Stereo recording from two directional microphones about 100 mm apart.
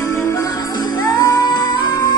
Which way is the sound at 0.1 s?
30° left (ahead or behind).